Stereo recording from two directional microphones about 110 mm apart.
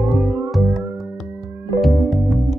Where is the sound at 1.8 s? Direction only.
Centre (ahead or behind).